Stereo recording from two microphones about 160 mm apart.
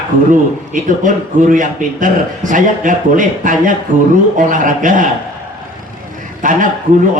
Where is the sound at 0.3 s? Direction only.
55° right (ahead or behind).